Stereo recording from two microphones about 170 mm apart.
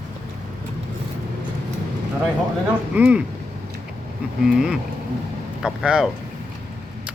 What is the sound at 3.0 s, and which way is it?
Speech, 10° right (ahead or behind).